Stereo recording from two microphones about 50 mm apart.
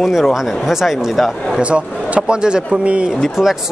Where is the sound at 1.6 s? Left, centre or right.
Centre.